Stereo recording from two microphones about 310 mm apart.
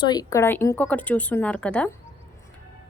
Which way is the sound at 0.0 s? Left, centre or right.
Centre.